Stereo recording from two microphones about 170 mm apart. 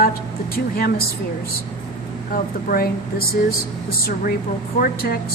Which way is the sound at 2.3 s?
60° left (ahead or behind).